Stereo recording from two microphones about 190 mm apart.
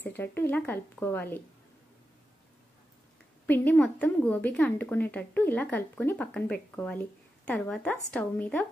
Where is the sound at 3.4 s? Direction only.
10° left (ahead or behind).